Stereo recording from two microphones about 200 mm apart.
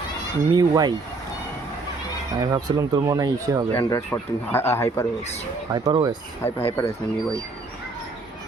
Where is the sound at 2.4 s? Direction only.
20° right (ahead or behind).